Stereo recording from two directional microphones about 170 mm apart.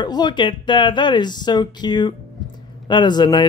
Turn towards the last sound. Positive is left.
turn(degrees=25)  # may be behind; listen again after turning